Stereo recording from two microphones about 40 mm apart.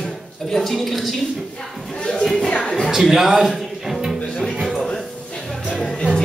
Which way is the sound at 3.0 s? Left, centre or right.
Centre.